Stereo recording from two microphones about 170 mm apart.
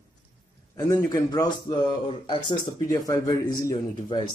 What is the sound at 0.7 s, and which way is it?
A man's voice, 20° left (ahead or behind).